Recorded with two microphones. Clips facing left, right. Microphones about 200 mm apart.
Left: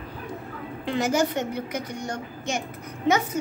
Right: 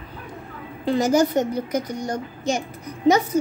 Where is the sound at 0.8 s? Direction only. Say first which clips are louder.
Right 5 dB; 40° right (ahead or behind).